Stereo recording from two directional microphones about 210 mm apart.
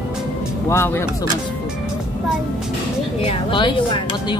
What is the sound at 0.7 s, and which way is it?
Speech, 10° left (ahead or behind).